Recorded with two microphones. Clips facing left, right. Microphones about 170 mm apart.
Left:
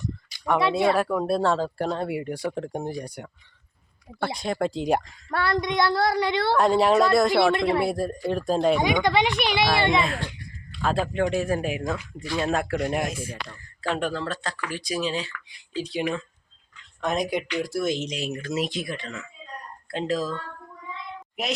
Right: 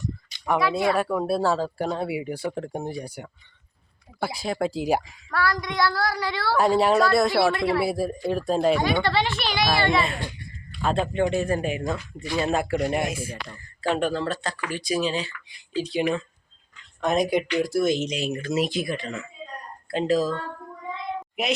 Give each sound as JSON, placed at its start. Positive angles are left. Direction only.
{"t": 0.3, "sound": "a sound", "side_deg": -20}
{"t": 0.9, "sound": "speech", "side_deg": 0}
{"t": 5.3, "sound": "a woman's voice", "side_deg": 25}
{"t": 6.5, "sound": "speech", "side_deg": -5}
{"t": 7.5, "sound": "a woman's voice", "side_deg": 20}
{"t": 7.8, "sound": "speech", "side_deg": -5}
{"t": 8.8, "sound": "speech", "side_deg": 15}
{"t": 10.0, "sound": "speech", "side_deg": -10}
{"t": 21.4, "sound": "speech", "side_deg": 0}